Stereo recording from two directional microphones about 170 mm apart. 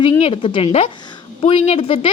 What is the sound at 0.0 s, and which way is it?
A woman's voice, 30° left (ahead or behind).